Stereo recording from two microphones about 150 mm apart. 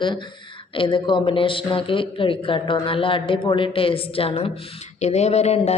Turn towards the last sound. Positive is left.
turn(degrees=45)  # may be behind; listen again after turning